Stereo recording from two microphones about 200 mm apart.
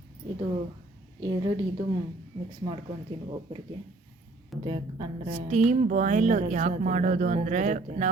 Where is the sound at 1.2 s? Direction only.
20° right (ahead or behind).